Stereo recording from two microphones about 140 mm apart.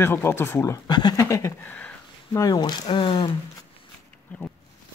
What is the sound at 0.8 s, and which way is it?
Speech, 30° left (ahead or behind).